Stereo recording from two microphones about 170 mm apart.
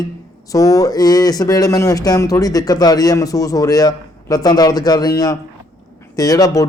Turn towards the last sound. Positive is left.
turn(degrees=20)  # may be behind; listen again after turning